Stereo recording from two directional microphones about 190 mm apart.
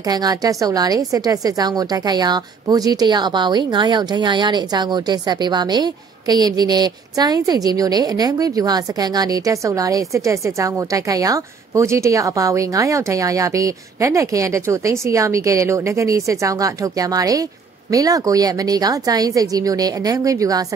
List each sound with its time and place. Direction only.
0.0 s a woman's voice: 20° right (ahead or behind)